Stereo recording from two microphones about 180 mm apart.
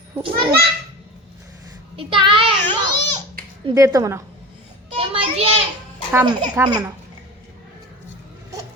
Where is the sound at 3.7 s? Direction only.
15° right (ahead or behind).